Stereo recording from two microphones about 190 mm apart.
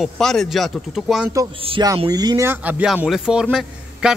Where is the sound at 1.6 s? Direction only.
30° right (ahead or behind).